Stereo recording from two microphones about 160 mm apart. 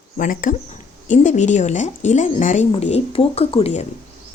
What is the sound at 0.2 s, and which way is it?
Speech, 55° left (ahead or behind).